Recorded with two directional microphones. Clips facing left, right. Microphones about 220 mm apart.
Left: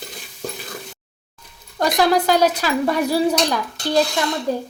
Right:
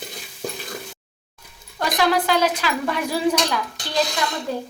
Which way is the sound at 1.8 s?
40° left (ahead or behind).